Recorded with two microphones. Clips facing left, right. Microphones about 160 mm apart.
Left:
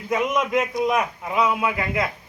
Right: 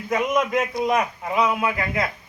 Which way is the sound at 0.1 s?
15° left (ahead or behind).